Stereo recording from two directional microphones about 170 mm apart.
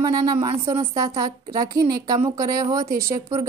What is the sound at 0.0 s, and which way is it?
A woman's voice, 25° right (ahead or behind).